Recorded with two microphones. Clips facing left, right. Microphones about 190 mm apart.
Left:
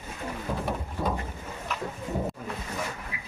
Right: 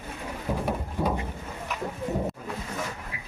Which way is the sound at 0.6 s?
10° right (ahead or behind).